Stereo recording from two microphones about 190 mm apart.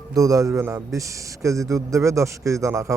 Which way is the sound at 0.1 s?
15° right (ahead or behind).